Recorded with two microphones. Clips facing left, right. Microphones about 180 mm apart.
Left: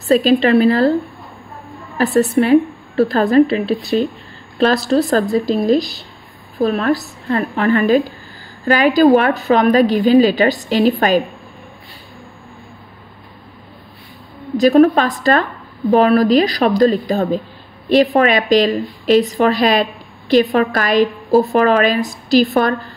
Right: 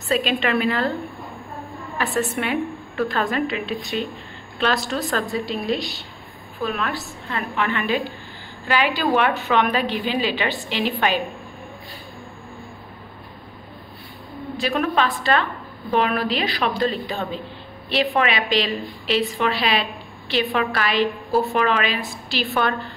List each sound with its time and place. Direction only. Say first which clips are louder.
0.1 s a woman's voice: left 10 dB; 35° left (ahead or behind)
2.0 s a woman's voice: left 10 dB; 40° left (ahead or behind)
14.6 s a woman's voice: left 11 dB; 40° left (ahead or behind)